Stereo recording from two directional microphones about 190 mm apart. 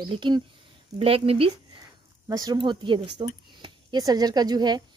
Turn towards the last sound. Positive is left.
turn(degrees=-20)  # may be behind; listen again after turning